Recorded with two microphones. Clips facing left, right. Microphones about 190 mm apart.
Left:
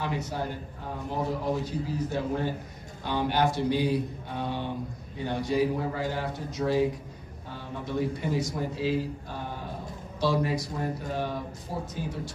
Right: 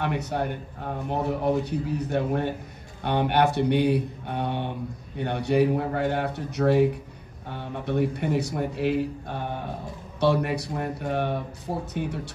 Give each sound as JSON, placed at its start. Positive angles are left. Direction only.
{"t": 0.0, "sound": "a man's voice", "side_deg": -65}